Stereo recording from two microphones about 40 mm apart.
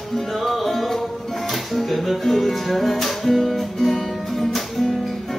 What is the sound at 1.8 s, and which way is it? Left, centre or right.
Music, centre.